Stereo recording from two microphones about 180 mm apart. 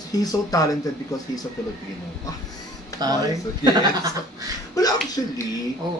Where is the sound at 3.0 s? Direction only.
20° right (ahead or behind).